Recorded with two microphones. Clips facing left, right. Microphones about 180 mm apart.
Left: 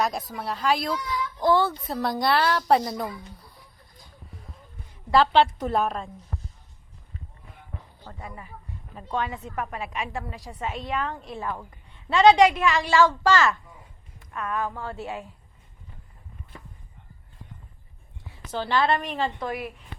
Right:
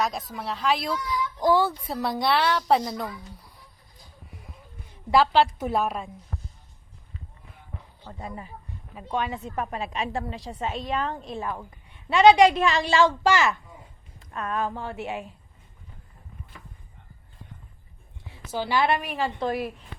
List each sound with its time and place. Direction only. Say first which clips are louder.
0.0 s a woman's voice: left 1 dB; centre (ahead or behind)
1.4 s a woman's voice: even; 15° right (ahead or behind)
5.1 s a woman's voice: left 1 dB; 5° right (ahead or behind)
8.2 s a woman's voice: right 4 dB; 25° right (ahead or behind)
12.5 s a woman's voice: right 1 dB; 30° right (ahead or behind); by 13.5 s 15° right (ahead or behind)
14.2 s a woman's voice: right 1 dB; 30° right (ahead or behind)
18.5 s a woman's voice: even; 10° right (ahead or behind)
19.4 s a woman's voice: right 4 dB; 35° right (ahead or behind)